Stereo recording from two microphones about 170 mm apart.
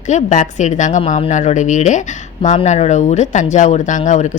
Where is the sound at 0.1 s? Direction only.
45° left (ahead or behind).